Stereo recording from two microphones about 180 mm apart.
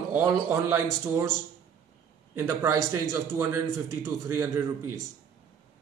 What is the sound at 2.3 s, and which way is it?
A man's voice, 15° right (ahead or behind).